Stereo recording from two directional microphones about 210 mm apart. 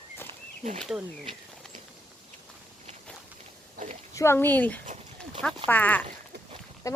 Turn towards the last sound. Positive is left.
turn(degrees=15)  # may be behind; listen again after turning